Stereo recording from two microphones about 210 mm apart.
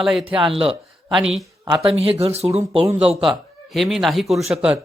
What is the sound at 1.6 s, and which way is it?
Speech, 25° right (ahead or behind).